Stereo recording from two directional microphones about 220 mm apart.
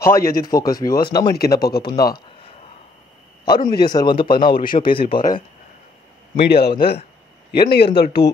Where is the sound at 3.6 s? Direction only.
20° left (ahead or behind).